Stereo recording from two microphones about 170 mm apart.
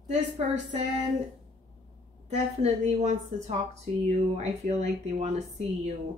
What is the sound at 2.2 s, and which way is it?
A woman's voice, 40° right (ahead or behind).